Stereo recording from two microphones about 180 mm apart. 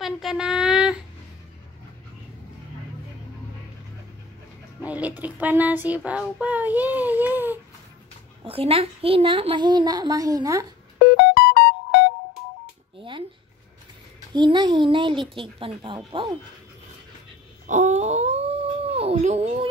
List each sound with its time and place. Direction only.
0.0 s child singing: centre (ahead or behind)
4.8 s a sound: 10° right (ahead or behind)
8.5 s a woman's voice: 30° right (ahead or behind)
11.0 s music: 65° left (ahead or behind)
14.3 s a woman's voice: 25° right (ahead or behind)
17.6 s dog: 40° right (ahead or behind)